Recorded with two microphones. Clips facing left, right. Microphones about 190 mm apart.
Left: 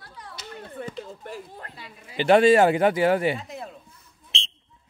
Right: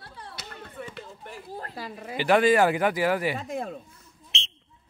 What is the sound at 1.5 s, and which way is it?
Speech, 40° right (ahead or behind).